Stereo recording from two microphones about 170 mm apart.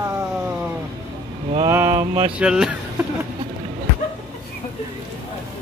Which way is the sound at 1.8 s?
35° right (ahead or behind).